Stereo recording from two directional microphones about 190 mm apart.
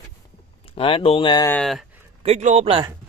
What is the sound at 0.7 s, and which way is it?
Speech, 30° left (ahead or behind).